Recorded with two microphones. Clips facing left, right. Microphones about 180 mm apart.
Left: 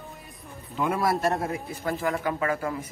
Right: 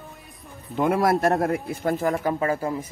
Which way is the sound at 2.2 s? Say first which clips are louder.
Right 3 dB; 35° right (ahead or behind).